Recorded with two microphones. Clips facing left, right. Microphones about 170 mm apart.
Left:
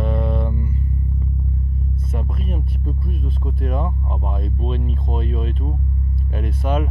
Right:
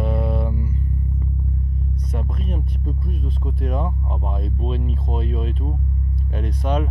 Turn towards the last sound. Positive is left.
turn(degrees=5)  # may be behind; listen again after turning